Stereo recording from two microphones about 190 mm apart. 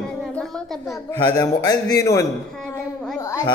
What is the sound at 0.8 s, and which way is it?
A man's voice, 20° left (ahead or behind).